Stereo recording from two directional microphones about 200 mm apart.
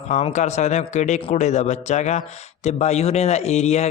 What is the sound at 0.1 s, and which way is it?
Speech, 35° left (ahead or behind).